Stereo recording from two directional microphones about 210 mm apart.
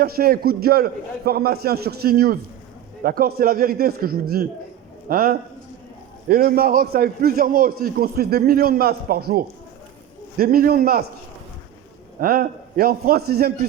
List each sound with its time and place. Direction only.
0.0 s a man's voice: 45° right (ahead or behind)
12.2 s a man's voice: 45° right (ahead or behind)